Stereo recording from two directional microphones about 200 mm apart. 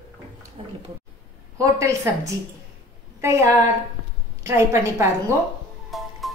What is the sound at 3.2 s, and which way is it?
A woman's voice, 15° right (ahead or behind).